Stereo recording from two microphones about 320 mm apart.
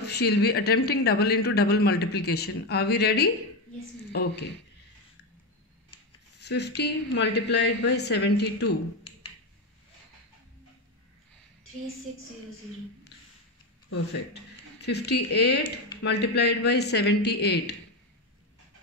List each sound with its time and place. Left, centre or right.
0.0 s speech: left
6.4 s speech: left
13.8 s speech: left